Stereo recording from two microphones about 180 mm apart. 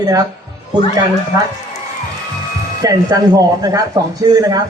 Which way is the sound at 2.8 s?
20° right (ahead or behind).